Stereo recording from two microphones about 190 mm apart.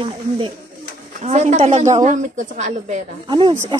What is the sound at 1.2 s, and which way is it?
Speech, 35° right (ahead or behind).